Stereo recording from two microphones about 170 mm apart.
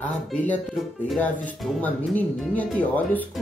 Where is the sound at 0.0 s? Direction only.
10° left (ahead or behind).